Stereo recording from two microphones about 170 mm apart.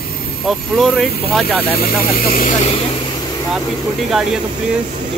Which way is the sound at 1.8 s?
55° left (ahead or behind).